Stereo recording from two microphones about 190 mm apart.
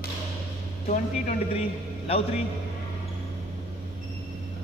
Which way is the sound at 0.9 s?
35° left (ahead or behind).